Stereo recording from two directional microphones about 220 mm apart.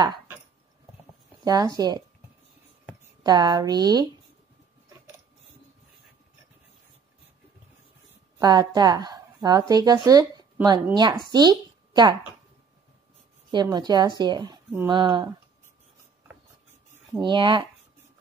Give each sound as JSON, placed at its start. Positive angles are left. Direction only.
{"t": 1.4, "sound": "a woman's voice", "side_deg": -15}
{"t": 3.3, "sound": "a woman's voice", "side_deg": -20}
{"t": 8.4, "sound": "a woman's voice", "side_deg": -20}
{"t": 13.5, "sound": "speech", "side_deg": -20}
{"t": 17.1, "sound": "speech", "side_deg": -20}